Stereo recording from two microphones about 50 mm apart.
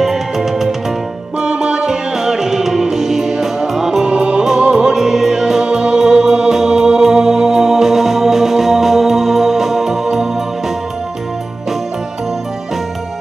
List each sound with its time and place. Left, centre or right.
0.0 s music: centre
1.4 s music: centre
4.1 s music: right